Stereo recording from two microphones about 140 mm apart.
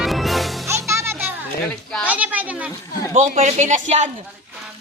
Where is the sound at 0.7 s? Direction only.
20° right (ahead or behind).